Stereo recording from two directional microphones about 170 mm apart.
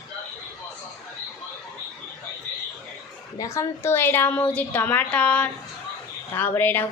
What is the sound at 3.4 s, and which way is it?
A woman's voice, 15° left (ahead or behind).